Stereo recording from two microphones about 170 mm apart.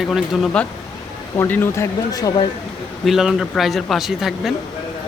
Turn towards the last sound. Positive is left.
turn(degrees=0)  # may be behind; listen again after turning